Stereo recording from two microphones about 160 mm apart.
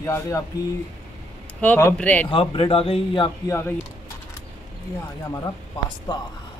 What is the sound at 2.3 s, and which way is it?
Speech, 35° left (ahead or behind).